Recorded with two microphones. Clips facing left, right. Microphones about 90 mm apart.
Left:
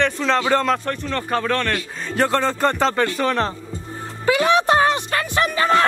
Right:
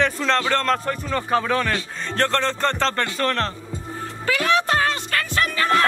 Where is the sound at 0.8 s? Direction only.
5° right (ahead or behind).